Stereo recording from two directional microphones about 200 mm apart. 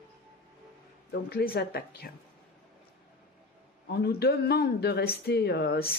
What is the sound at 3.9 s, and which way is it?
Speech, 50° left (ahead or behind).